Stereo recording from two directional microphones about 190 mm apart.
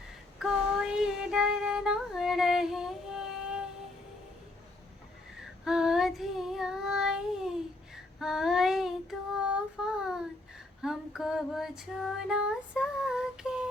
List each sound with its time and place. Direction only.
0.3 s child singing: 5° right (ahead or behind)
5.6 s child singing: 5° right (ahead or behind)
10.8 s female singing: centre (ahead or behind)